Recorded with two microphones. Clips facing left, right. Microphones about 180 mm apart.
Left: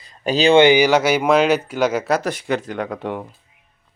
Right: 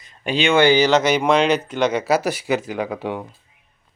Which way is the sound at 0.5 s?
20° left (ahead or behind).